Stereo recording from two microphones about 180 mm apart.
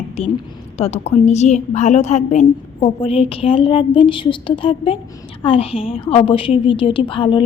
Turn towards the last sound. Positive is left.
turn(degrees=30)  # may be behind; listen again after turning